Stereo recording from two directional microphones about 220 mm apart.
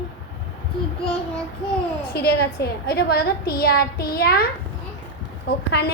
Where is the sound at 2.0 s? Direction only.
45° left (ahead or behind).